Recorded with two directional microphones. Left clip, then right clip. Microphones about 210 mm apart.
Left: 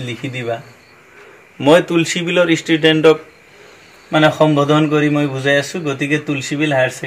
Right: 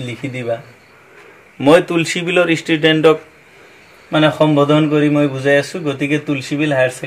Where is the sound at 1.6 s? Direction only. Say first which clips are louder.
Even; 20° right (ahead or behind).